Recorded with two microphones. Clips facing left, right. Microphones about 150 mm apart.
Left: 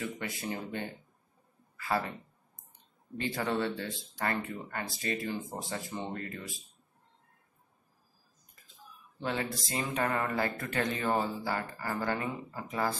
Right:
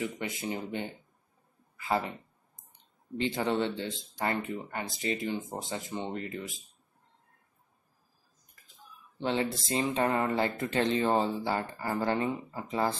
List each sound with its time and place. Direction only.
0.0 s speech: 20° right (ahead or behind)
3.2 s speech: 20° right (ahead or behind)
9.2 s speech: 25° right (ahead or behind)